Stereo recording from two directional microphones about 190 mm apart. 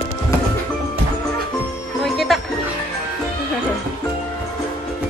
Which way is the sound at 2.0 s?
Centre (ahead or behind).